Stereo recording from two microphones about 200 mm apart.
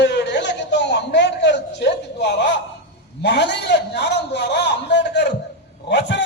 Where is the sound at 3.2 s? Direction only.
60° left (ahead or behind).